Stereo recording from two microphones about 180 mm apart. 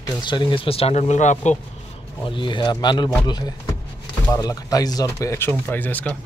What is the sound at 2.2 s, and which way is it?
Speech, 25° left (ahead or behind).